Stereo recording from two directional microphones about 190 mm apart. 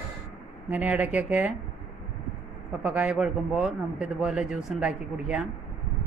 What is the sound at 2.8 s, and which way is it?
A man's voice, 5° right (ahead or behind).